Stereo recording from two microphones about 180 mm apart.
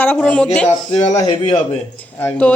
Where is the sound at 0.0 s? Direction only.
10° left (ahead or behind).